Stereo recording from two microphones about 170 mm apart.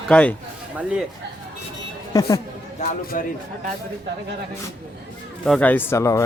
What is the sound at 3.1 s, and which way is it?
Speech, 55° left (ahead or behind).